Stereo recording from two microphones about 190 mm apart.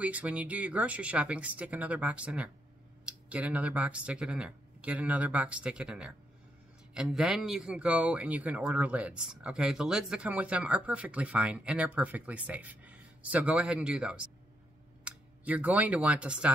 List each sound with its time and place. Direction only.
0.0 s speech: 5° right (ahead or behind)